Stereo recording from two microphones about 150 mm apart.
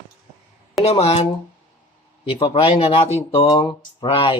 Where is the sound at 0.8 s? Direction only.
45° left (ahead or behind).